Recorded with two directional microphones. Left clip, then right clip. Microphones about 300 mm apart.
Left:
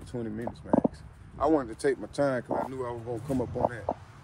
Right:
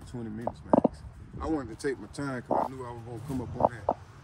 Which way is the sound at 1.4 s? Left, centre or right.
Centre.